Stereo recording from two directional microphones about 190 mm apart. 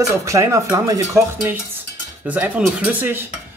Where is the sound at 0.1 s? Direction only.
15° right (ahead or behind).